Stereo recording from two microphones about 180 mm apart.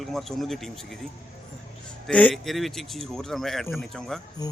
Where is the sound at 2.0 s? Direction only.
5° left (ahead or behind).